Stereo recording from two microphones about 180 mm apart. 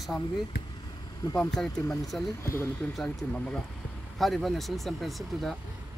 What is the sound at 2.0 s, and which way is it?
Speech, centre (ahead or behind).